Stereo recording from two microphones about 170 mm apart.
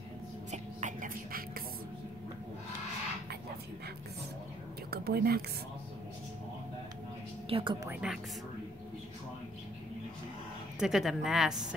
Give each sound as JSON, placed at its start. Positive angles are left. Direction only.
{"t": 0.5, "sound": "a sound", "side_deg": -45}
{"t": 4.9, "sound": "speech", "side_deg": -70}
{"t": 7.4, "sound": "a woman's voice", "side_deg": -30}
{"t": 8.0, "sound": "a woman's voice", "side_deg": -5}
{"t": 10.8, "sound": "a woman's voice", "side_deg": 0}